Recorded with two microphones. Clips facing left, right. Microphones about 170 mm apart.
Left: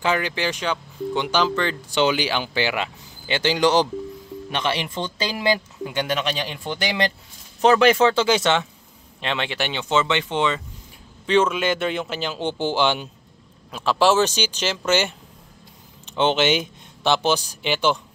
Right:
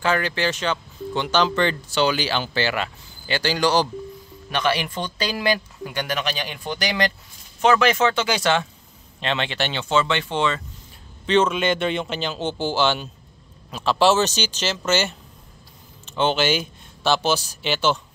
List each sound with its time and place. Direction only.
0.0 s speech: 15° left (ahead or behind)
1.5 s speech: centre (ahead or behind)
1.9 s speech: 20° left (ahead or behind)